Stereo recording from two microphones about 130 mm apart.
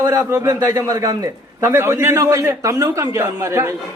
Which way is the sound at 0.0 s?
20° right (ahead or behind).